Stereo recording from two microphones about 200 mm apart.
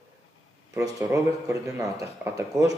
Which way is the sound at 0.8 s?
15° right (ahead or behind).